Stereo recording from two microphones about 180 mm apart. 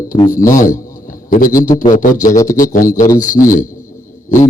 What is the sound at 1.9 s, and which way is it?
A man's voice, 45° left (ahead or behind).